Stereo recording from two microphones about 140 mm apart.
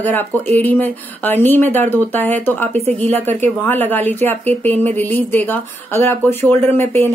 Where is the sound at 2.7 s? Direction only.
50° right (ahead or behind).